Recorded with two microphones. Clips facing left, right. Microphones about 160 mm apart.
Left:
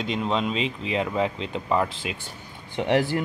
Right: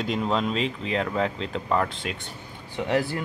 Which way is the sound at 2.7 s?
20° left (ahead or behind).